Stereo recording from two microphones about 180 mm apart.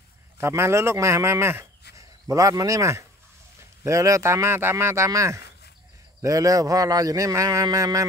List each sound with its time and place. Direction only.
0.4 s speech: 15° right (ahead or behind)